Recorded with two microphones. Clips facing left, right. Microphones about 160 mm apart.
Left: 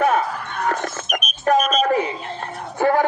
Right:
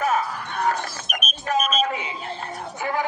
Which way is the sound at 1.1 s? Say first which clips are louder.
Left 7 dB; 45° left (ahead or behind).